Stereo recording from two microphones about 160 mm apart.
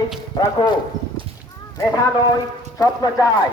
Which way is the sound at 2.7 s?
25° left (ahead or behind).